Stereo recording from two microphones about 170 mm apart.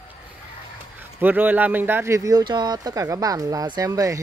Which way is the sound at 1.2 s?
10° right (ahead or behind).